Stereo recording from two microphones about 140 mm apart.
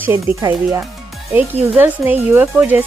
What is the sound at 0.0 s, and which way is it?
Speech, 15° right (ahead or behind).